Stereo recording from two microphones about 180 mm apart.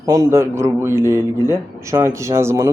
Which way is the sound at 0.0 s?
20° right (ahead or behind).